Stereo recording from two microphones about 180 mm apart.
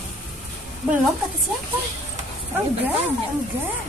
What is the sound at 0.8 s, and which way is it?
Speech, 5° right (ahead or behind).